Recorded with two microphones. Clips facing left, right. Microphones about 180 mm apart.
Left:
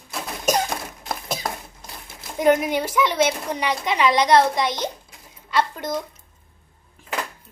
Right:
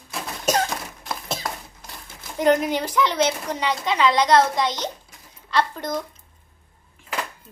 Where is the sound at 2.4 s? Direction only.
10° left (ahead or behind).